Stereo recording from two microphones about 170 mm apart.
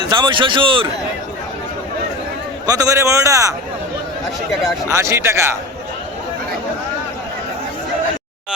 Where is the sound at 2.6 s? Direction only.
20° right (ahead or behind).